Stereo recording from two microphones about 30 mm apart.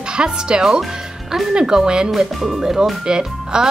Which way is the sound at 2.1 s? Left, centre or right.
Centre.